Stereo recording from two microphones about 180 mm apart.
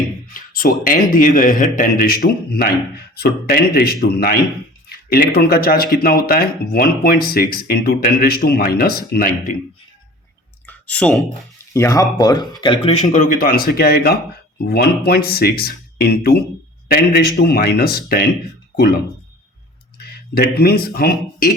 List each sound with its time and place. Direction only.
0.3 s speech: 50° left (ahead or behind)
10.7 s clicking: 5° left (ahead or behind)
11.7 s speech: 15° left (ahead or behind); by 18.3 s 60° left (ahead or behind)
20.0 s speech: 60° left (ahead or behind)